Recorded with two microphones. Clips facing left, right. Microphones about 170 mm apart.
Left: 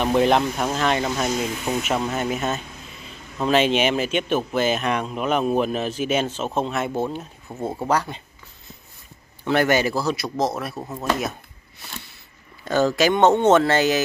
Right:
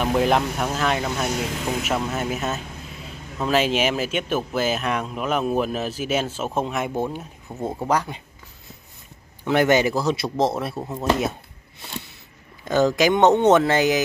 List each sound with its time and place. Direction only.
0.0 s speech: 5° right (ahead or behind)
7.4 s speech: centre (ahead or behind)
7.9 s speech: 10° right (ahead or behind)
9.4 s a man's voice: 15° right (ahead or behind)
12.6 s speech: 15° right (ahead or behind)